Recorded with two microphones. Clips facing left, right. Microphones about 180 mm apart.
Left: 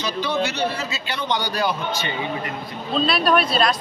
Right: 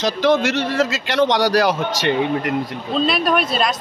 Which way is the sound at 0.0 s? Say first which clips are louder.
Right 7 dB; 90° right.